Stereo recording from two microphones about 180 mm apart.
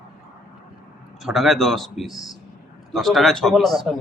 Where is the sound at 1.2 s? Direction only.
Centre (ahead or behind).